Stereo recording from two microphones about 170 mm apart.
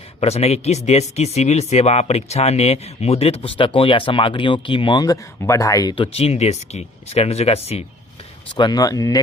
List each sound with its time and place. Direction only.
0.2 s speech: 35° left (ahead or behind)
8.5 s speech: 25° left (ahead or behind)